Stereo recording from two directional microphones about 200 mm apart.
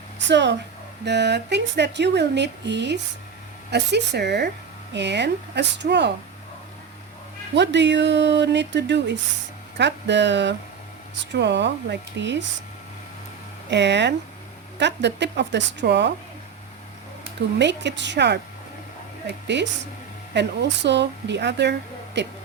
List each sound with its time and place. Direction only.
0.3 s speech: 60° right (ahead or behind)
7.5 s speech: 60° right (ahead or behind)
13.7 s speech: 60° right (ahead or behind)
17.6 s speech: 60° right (ahead or behind)
19.5 s speech: 60° right (ahead or behind)